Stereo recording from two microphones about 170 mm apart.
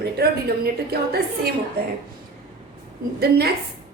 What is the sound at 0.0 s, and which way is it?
A woman's voice, 65° right (ahead or behind).